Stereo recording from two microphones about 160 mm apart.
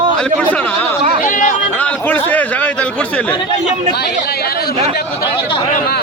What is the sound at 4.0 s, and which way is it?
Speech, 80° left.